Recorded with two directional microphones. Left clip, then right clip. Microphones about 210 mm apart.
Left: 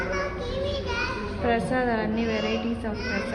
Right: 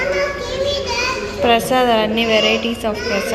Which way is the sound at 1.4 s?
15° right (ahead or behind).